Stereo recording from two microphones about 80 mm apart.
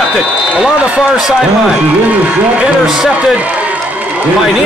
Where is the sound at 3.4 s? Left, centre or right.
Centre.